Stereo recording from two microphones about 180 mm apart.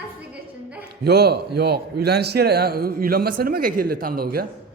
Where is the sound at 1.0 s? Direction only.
65° right (ahead or behind).